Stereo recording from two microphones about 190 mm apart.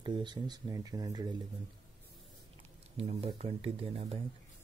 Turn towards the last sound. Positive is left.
turn(degrees=-30)  # may be behind; listen again after turning